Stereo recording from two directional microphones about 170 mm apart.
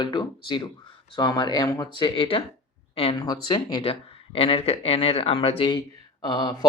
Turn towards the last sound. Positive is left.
turn(degrees=25)  # may be behind; listen again after turning